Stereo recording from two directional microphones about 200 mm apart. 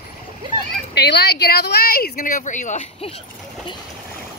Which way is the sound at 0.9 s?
55° left (ahead or behind).